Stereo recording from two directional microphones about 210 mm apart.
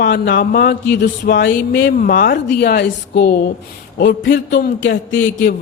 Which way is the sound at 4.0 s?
60° left (ahead or behind).